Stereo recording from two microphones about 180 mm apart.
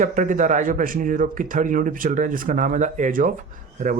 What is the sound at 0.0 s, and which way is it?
Speech, 45° right (ahead or behind).